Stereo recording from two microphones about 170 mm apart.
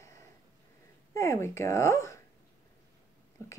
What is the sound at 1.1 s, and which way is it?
Speech, 15° left (ahead or behind).